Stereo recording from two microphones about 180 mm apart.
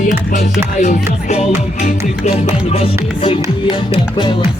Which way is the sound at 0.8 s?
40° left (ahead or behind).